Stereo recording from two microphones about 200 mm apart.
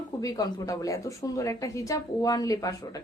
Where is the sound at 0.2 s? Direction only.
20° left (ahead or behind).